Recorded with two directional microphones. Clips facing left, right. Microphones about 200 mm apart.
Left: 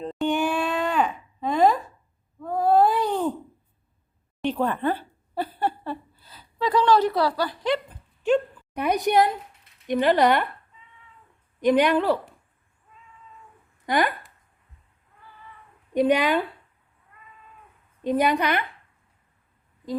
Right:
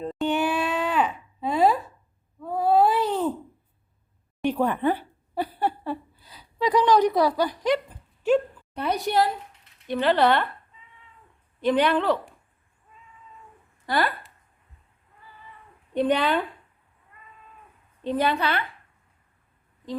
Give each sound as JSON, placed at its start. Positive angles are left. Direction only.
{"t": 0.0, "sound": "a sound", "side_deg": -5}
{"t": 2.4, "sound": "baby cry", "side_deg": -5}
{"t": 4.4, "sound": "a sound", "side_deg": -10}
{"t": 8.7, "sound": "a woman's voice", "side_deg": 15}
{"t": 11.6, "sound": "speech", "side_deg": 10}
{"t": 13.8, "sound": "speech", "side_deg": 15}
{"t": 15.9, "sound": "speech", "side_deg": 10}
{"t": 18.0, "sound": "speech", "side_deg": 15}